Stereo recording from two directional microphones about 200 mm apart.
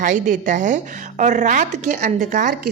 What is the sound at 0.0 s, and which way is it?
A woman's voice, 40° right (ahead or behind).